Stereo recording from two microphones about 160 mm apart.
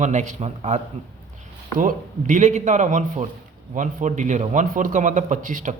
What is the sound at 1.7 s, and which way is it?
Speech, 55° right (ahead or behind).